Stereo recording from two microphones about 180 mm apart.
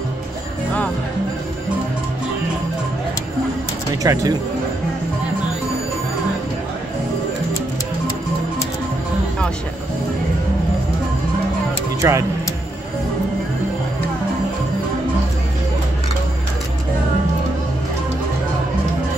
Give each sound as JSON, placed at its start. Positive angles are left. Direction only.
{"t": 4.0, "sound": "speech", "side_deg": -20}
{"t": 12.0, "sound": "speech", "side_deg": -15}